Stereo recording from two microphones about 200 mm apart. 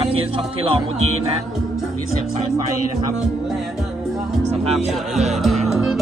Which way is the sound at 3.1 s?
Centre (ahead or behind).